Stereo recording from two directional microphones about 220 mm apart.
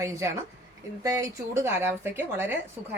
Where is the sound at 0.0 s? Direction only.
15° right (ahead or behind).